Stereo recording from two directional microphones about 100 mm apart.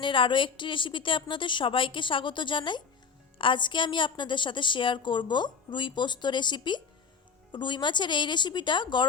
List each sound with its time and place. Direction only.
0.0 s a woman's voice: 55° left (ahead or behind)